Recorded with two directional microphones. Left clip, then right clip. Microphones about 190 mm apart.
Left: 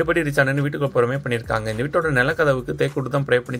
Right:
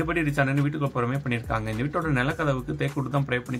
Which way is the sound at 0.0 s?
20° left (ahead or behind).